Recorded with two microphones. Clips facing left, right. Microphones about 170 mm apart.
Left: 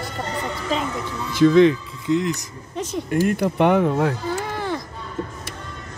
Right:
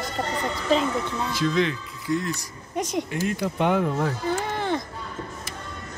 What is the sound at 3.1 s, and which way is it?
Speech, 55° left (ahead or behind).